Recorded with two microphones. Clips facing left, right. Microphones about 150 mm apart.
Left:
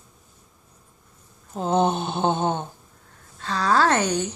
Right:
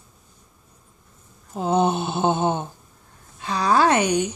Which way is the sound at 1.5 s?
5° right (ahead or behind).